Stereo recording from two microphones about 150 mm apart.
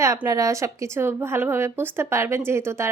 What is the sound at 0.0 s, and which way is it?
Speech, 20° right (ahead or behind).